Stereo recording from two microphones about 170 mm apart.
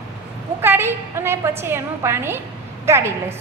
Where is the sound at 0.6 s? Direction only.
15° right (ahead or behind).